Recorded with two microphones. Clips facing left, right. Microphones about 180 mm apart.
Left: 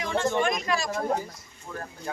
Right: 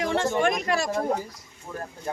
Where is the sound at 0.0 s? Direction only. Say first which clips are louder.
Right 3 dB; 70° right (ahead or behind).